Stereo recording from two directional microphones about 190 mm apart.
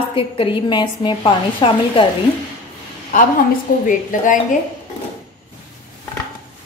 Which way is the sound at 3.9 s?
45° left (ahead or behind).